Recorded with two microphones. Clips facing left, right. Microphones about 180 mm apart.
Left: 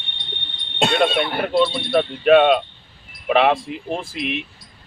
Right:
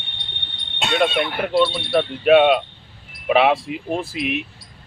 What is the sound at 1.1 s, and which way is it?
Speech, 35° left (ahead or behind).